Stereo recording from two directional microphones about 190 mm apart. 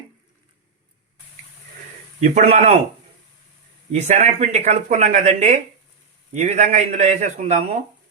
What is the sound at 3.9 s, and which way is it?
Speech, 35° right (ahead or behind).